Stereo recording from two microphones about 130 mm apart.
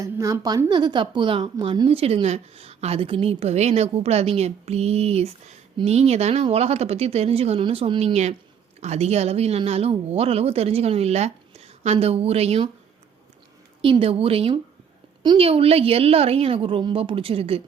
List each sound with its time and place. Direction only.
0.0 s a woman's voice: 25° right (ahead or behind); by 12.6 s 50° right (ahead or behind)
13.8 s speech: 45° right (ahead or behind)